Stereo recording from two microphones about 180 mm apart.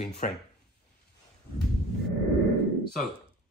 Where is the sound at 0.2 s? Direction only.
45° left (ahead or behind).